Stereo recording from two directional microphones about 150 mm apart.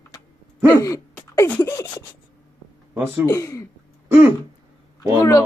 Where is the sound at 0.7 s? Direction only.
20° left (ahead or behind).